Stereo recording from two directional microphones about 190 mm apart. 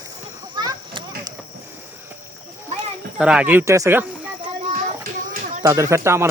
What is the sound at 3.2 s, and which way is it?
Speech, 5° right (ahead or behind).